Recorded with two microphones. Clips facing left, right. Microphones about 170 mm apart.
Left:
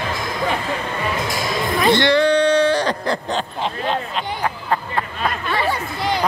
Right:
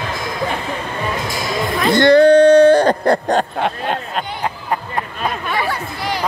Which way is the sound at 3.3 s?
55° right (ahead or behind).